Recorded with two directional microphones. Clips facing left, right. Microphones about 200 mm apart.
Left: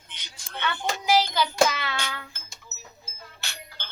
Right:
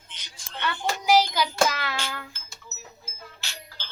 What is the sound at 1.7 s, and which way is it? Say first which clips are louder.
Child singing: even; 5° right (ahead or behind).